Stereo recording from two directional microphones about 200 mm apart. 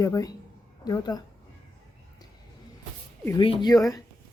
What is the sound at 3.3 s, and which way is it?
Speech, 25° left (ahead or behind).